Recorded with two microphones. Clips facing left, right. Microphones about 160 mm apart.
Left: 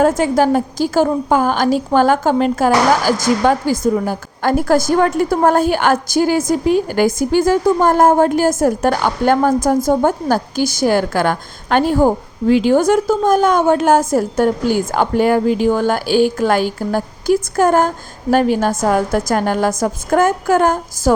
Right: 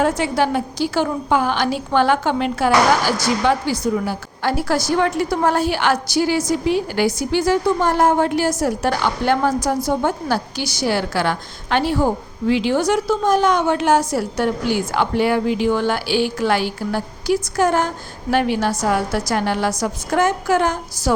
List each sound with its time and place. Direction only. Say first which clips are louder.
0.0 s a woman's voice: left 5 dB; 45° left (ahead or behind)